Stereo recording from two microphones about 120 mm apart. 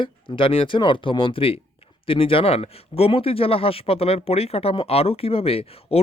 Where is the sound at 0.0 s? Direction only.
45° left (ahead or behind).